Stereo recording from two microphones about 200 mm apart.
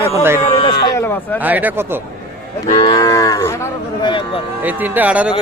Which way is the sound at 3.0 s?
15° left (ahead or behind).